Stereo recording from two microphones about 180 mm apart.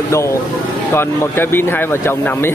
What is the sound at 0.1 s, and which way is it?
Speech, 15° left (ahead or behind).